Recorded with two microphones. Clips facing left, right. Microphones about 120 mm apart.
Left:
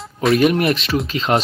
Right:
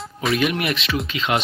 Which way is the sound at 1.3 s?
40° left (ahead or behind).